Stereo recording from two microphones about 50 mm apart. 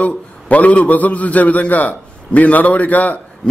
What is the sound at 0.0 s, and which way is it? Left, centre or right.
A man's voice, left.